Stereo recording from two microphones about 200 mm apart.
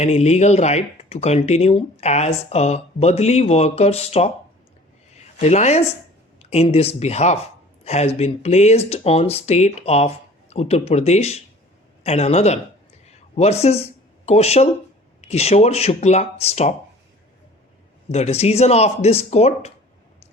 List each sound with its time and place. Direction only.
0.0 s speech: 35° left (ahead or behind)
13.1 s a sound: 30° left (ahead or behind)
14.3 s speech: 30° left (ahead or behind)
18.1 s speech: 30° left (ahead or behind)